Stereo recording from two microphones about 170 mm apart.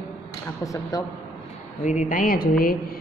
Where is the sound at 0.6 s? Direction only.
20° left (ahead or behind).